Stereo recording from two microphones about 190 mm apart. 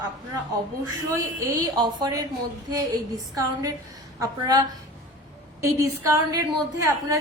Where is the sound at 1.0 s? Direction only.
20° right (ahead or behind).